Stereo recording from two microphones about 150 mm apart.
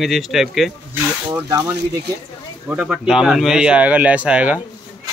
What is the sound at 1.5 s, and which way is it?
Speech, 25° right (ahead or behind).